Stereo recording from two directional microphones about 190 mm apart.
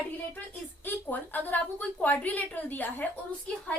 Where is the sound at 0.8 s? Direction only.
10° left (ahead or behind).